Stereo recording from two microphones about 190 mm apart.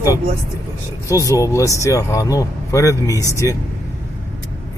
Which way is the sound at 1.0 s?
15° left (ahead or behind).